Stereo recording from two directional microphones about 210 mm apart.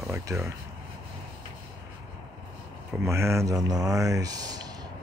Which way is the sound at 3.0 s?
15° right (ahead or behind).